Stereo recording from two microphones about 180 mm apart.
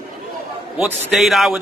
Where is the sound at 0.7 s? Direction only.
Centre (ahead or behind).